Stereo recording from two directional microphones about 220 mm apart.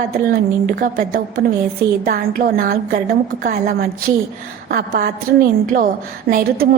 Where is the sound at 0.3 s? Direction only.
40° right (ahead or behind).